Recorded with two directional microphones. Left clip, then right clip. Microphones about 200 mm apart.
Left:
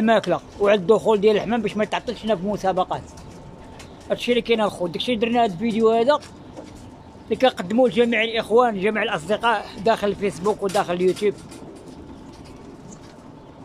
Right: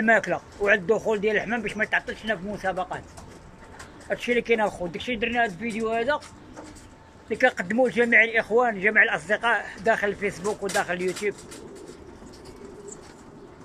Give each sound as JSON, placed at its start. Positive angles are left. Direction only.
{"t": 0.0, "sound": "speech", "side_deg": 20}
{"t": 4.1, "sound": "speech", "side_deg": 15}
{"t": 7.2, "sound": "speech", "side_deg": 20}